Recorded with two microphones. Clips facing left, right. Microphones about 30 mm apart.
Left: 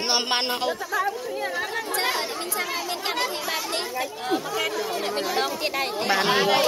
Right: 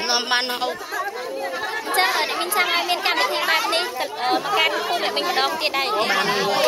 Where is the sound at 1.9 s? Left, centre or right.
Right.